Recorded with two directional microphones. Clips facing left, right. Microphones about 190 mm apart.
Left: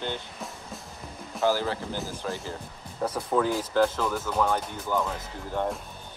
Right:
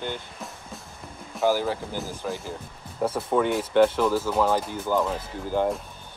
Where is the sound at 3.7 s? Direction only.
25° right (ahead or behind).